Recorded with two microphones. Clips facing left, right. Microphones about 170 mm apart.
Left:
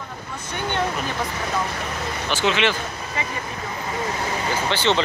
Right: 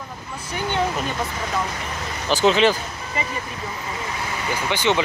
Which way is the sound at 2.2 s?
35° right (ahead or behind).